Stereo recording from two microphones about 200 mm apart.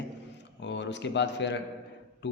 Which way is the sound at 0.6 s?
60° left (ahead or behind).